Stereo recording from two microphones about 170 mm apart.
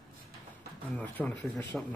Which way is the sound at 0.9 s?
5° left (ahead or behind).